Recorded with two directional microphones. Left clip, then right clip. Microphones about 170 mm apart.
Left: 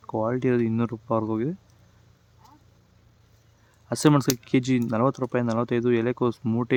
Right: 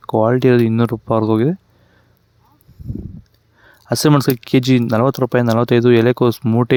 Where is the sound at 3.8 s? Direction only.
35° right (ahead or behind).